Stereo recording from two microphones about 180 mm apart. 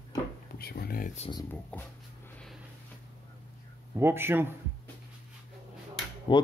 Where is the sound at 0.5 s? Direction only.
60° left (ahead or behind).